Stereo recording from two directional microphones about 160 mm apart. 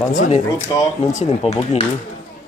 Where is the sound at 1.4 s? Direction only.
40° left (ahead or behind).